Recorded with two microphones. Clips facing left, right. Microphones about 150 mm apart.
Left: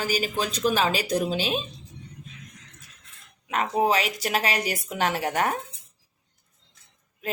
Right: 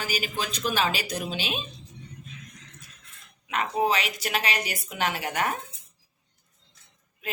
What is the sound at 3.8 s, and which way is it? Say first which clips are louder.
A woman's voice: left 3 dB; 35° left (ahead or behind).